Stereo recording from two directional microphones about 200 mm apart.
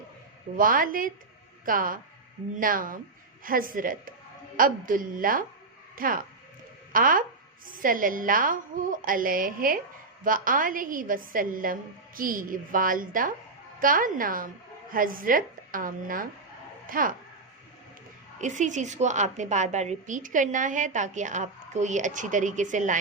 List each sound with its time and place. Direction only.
0.5 s a woman's voice: 45° right (ahead or behind)
18.3 s a woman's voice: 40° right (ahead or behind)